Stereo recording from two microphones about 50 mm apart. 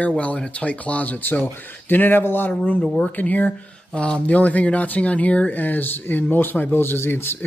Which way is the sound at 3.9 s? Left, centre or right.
Left.